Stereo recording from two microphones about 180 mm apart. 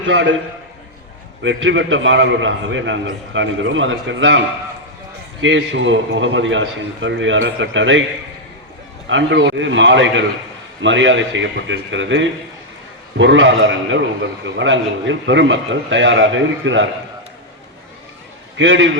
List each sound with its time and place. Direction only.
0.0 s a man's voice: 90° right
1.4 s a man's voice: 85° right
9.0 s a man's voice: 85° right
18.5 s a man's voice: 90° right